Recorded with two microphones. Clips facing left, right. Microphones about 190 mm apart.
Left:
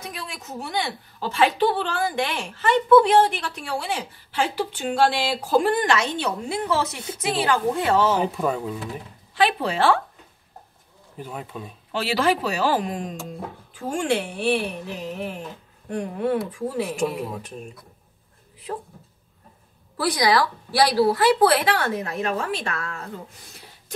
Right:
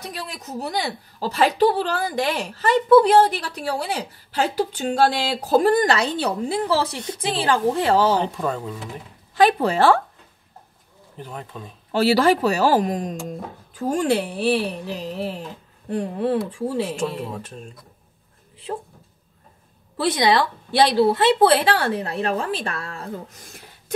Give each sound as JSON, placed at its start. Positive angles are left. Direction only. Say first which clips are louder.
{"t": 0.0, "sound": "a woman's voice", "louder": "right 2 dB", "side_deg": -35}
{"t": 8.2, "sound": "speech", "louder": "left 1 dB", "side_deg": 5}
{"t": 9.3, "sound": "speech", "louder": "right 5 dB", "side_deg": -45}
{"t": 11.1, "sound": "speech", "louder": "left 1 dB", "side_deg": 10}
{"t": 11.9, "sound": "a woman's voice", "louder": "right 5 dB", "side_deg": -40}
{"t": 17.1, "sound": "speech", "louder": "even", "side_deg": 5}
{"t": 20.0, "sound": "a woman's voice", "louder": "right 2 dB", "side_deg": -25}